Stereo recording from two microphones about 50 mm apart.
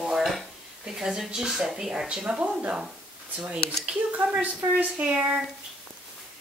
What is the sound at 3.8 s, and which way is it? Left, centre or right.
A woman's voice, right.